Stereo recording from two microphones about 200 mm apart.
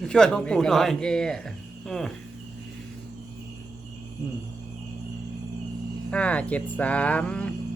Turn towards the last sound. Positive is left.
turn(degrees=5)  # may be behind; listen again after turning